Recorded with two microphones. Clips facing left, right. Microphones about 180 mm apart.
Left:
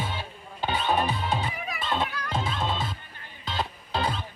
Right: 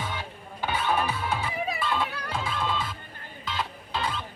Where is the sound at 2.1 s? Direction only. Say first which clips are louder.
Left 1 dB; 30° right (ahead or behind).